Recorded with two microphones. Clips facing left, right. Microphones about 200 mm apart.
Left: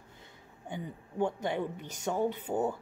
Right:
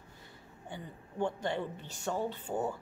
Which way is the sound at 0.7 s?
15° left (ahead or behind).